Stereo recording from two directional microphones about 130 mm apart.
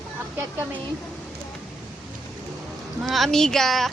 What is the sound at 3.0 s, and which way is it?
Speech, centre (ahead or behind).